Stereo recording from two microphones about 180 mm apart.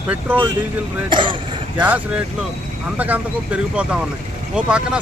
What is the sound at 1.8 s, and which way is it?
Speech, 10° right (ahead or behind).